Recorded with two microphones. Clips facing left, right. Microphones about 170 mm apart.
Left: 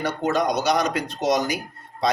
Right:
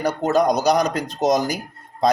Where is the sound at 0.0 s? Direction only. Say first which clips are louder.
Right 4 dB; 40° right (ahead or behind).